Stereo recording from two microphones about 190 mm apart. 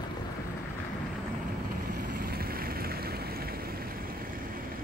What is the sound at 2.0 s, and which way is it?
Vehicle, 50° right (ahead or behind).